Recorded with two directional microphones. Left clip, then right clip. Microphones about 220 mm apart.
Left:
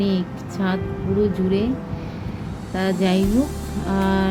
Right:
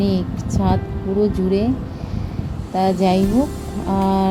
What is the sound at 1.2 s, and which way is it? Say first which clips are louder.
Speech: right 3 dB; 5° right (ahead or behind).